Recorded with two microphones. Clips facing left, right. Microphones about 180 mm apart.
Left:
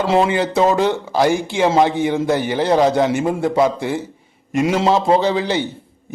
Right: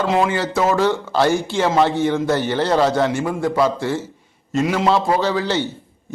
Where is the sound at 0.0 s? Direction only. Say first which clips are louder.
Left 2 dB; 30° left (ahead or behind).